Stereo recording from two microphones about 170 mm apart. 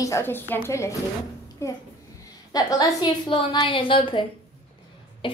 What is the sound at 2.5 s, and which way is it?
A woman's voice, 25° left (ahead or behind).